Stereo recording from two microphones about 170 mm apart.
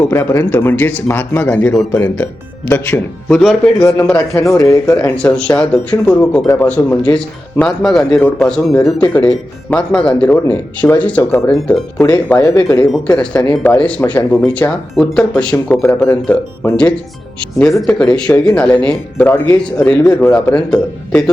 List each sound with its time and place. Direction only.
0.0 s speech: 15° left (ahead or behind)
3.8 s speech: 10° left (ahead or behind)
4.5 s speech: 20° left (ahead or behind)
5.1 s speech: 5° left (ahead or behind)
17.9 s speech: 5° left (ahead or behind)